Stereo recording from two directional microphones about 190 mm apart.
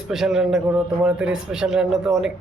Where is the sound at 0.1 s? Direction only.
Centre (ahead or behind).